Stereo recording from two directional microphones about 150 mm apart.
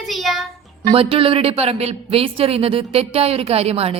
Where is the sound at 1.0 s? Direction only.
40° right (ahead or behind).